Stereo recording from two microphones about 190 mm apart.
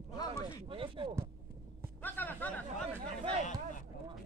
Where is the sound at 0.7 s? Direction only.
25° right (ahead or behind).